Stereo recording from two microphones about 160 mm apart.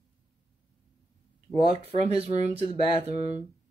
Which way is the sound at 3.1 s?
45° right (ahead or behind).